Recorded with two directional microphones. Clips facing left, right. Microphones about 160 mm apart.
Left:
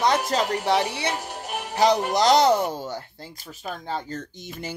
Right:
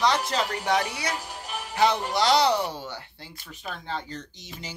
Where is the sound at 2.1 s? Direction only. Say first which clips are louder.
Left 4 dB; 45° left (ahead or behind).